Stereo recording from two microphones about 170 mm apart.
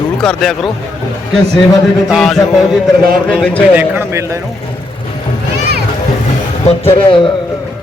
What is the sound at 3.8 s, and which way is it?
Speech, 15° right (ahead or behind).